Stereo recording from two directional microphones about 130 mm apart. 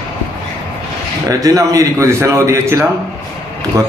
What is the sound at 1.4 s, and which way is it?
Speech, 25° right (ahead or behind).